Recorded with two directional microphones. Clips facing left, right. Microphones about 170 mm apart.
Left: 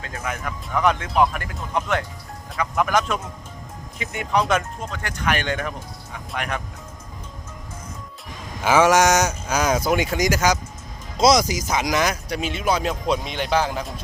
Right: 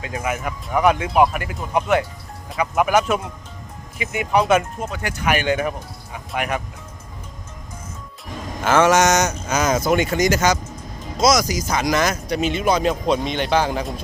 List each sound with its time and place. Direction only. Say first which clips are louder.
0.0 s speech: right 5 dB; 10° right (ahead or behind)
8.6 s a sound: right 1 dB; 10° left (ahead or behind)
9.5 s speech: right 2 dB; 5° right (ahead or behind)
9.8 s a sound: right 3 dB; 5° left (ahead or behind)
11.2 s speech: left 1 dB; 30° left (ahead or behind)
11.7 s speech: right 2 dB; centre (ahead or behind)